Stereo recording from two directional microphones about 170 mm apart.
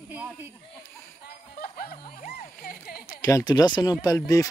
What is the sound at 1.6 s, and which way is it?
Music, 60° left (ahead or behind).